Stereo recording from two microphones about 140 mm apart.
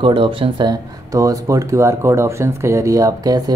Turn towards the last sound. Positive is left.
turn(degrees=-25)  # may be behind; listen again after turning